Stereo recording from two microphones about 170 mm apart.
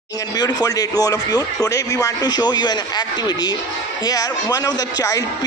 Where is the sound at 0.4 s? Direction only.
25° left (ahead or behind).